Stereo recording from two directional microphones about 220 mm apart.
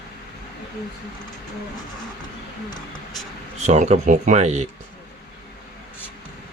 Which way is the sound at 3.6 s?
30° right (ahead or behind).